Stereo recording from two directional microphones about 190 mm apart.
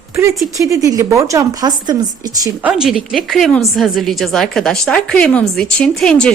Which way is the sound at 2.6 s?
5° right (ahead or behind).